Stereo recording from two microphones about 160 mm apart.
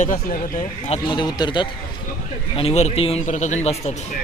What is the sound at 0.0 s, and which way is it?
Speech, 55° left (ahead or behind).